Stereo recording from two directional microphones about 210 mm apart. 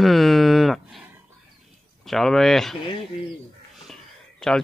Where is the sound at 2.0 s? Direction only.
Centre (ahead or behind).